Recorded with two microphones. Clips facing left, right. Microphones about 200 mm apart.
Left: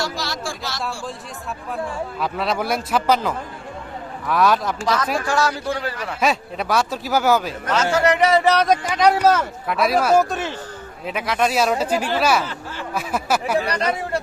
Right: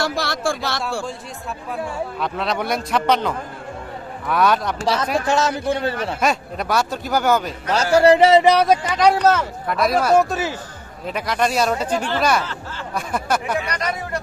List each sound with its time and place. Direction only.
0.0 s speech: 55° right (ahead or behind)
1.7 s speech: centre (ahead or behind)
4.8 s a man's voice: 30° right (ahead or behind)
6.1 s speech: centre (ahead or behind)
7.9 s a man's voice: 30° right (ahead or behind)
9.0 s speech: centre (ahead or behind)
13.6 s speech: 30° left (ahead or behind)